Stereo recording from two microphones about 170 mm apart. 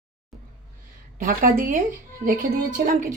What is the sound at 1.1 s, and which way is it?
Speech, 50° right (ahead or behind).